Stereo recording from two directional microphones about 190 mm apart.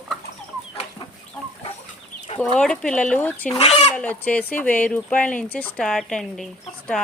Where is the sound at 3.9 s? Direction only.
10° left (ahead or behind).